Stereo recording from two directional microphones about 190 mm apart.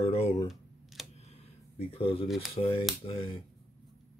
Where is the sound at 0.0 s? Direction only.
30° left (ahead or behind).